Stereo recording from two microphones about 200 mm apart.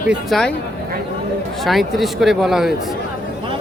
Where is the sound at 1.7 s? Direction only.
Centre (ahead or behind).